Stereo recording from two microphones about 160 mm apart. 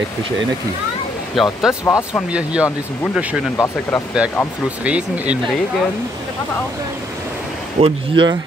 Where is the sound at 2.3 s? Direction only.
5° right (ahead or behind).